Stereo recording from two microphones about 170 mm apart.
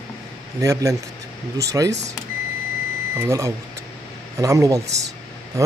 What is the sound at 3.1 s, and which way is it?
Speech, 15° right (ahead or behind).